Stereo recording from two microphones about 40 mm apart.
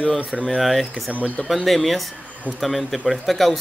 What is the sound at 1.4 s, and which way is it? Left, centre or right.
Speech, centre.